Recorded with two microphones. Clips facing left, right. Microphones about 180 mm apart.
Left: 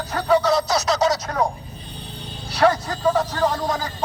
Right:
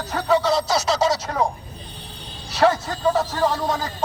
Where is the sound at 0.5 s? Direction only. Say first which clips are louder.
Even; 25° right (ahead or behind).